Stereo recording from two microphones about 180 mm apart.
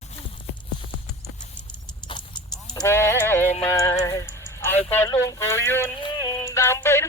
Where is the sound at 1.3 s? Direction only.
40° left (ahead or behind).